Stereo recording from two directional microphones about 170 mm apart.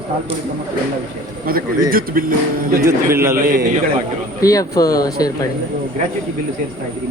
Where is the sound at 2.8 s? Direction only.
15° right (ahead or behind).